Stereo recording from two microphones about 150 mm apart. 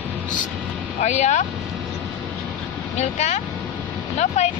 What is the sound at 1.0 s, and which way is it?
Speech, 50° left (ahead or behind).